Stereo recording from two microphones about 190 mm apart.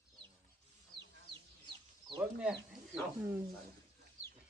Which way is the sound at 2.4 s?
5° right (ahead or behind).